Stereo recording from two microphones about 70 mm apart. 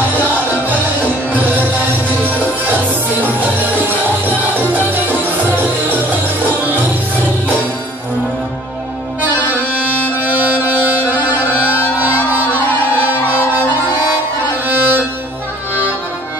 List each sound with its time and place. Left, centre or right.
1.3 s music: right
10.2 s music: right
14.7 s music: right